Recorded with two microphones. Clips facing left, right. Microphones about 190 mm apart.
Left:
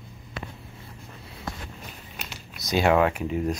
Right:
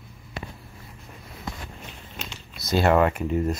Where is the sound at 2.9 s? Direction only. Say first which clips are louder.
Right 1 dB; 5° left (ahead or behind).